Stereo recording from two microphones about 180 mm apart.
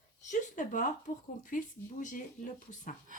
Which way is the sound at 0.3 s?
45° left (ahead or behind).